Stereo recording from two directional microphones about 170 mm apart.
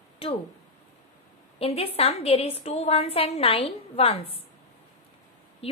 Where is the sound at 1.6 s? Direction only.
35° left (ahead or behind).